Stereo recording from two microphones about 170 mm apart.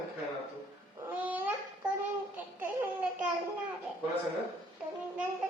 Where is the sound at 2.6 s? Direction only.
10° right (ahead or behind).